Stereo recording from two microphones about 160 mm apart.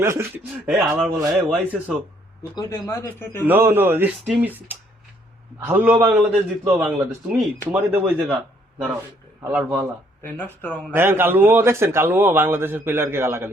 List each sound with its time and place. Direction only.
0.0 s a man's voice: 15° right (ahead or behind)
2.6 s a man's voice: 20° left (ahead or behind)
3.4 s a man's voice: 15° right (ahead or behind)
9.4 s a man's voice: 10° right (ahead or behind)
10.2 s a man's voice: 10° left (ahead or behind)
10.9 s a man's voice: 15° right (ahead or behind)